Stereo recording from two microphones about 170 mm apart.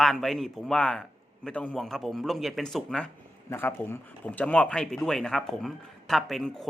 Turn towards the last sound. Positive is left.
turn(degrees=0)  # may be behind; listen again after turning